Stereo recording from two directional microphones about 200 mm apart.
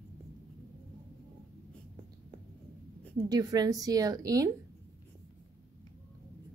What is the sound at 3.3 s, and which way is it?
A woman's voice, 20° right (ahead or behind).